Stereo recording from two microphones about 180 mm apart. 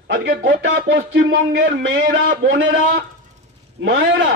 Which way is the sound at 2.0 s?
65° right (ahead or behind).